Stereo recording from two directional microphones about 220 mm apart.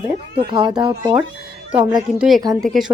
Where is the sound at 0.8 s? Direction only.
20° right (ahead or behind).